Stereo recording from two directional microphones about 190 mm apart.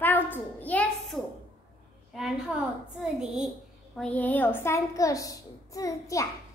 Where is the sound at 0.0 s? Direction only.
10° left (ahead or behind).